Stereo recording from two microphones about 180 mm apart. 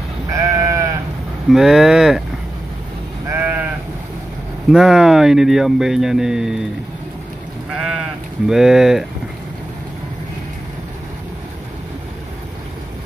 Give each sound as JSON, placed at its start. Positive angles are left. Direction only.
{"t": 0.3, "sound": "sheep", "side_deg": -20}
{"t": 1.5, "sound": "speech", "side_deg": 0}
{"t": 3.3, "sound": "sheep", "side_deg": -10}
{"t": 4.6, "sound": "speech", "side_deg": 0}
{"t": 7.7, "sound": "sheep", "side_deg": -5}
{"t": 8.5, "sound": "speech", "side_deg": -5}